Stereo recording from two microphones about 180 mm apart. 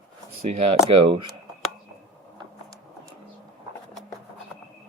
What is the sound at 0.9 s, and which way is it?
Speech, 30° right (ahead or behind).